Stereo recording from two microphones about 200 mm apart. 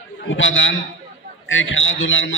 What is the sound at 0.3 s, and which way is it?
A man's voice, 75° left (ahead or behind).